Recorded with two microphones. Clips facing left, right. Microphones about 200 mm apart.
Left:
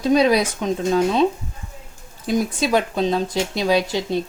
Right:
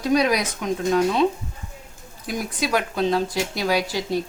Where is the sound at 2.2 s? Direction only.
25° left (ahead or behind).